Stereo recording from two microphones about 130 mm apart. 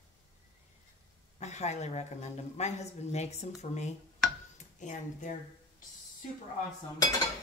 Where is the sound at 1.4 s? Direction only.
60° left (ahead or behind).